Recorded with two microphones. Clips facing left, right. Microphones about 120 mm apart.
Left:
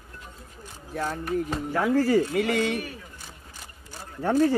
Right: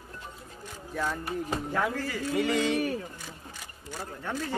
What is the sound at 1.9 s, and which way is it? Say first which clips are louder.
Speech: left 13 dB; 40° left (ahead or behind).